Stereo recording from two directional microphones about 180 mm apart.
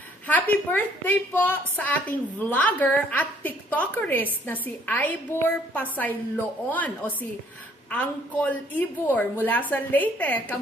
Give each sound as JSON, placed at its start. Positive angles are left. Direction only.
{"t": 0.3, "sound": "a woman's voice", "side_deg": 10}